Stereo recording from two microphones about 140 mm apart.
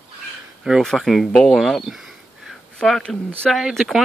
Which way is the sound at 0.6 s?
Centre (ahead or behind).